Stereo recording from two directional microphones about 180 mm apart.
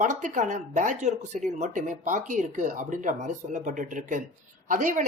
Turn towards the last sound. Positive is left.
turn(degrees=-45)  # may be behind; listen again after turning